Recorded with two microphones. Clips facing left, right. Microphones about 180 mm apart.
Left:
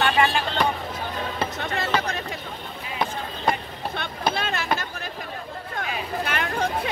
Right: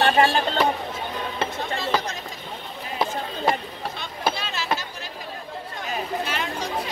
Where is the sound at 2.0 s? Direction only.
60° left (ahead or behind).